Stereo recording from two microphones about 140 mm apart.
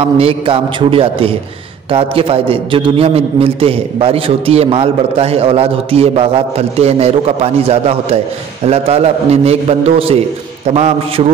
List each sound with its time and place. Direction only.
0.2 s a man's voice: 40° right (ahead or behind)